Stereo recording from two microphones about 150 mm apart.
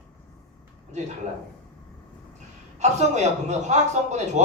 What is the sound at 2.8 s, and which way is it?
A man's voice, 50° right (ahead or behind).